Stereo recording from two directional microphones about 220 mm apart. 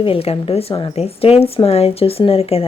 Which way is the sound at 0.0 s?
25° left (ahead or behind).